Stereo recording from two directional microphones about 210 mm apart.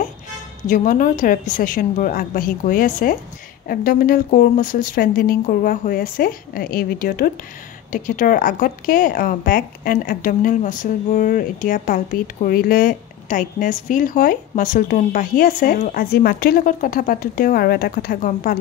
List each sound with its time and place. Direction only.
0.7 s a woman's voice: 40° left (ahead or behind)